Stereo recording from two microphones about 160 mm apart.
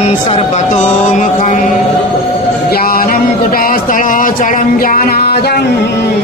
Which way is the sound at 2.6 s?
70° left (ahead or behind).